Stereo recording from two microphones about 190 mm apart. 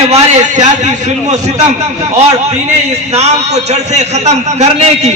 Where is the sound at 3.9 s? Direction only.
35° right (ahead or behind).